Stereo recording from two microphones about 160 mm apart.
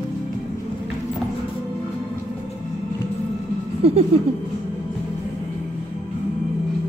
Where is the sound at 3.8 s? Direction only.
40° right (ahead or behind).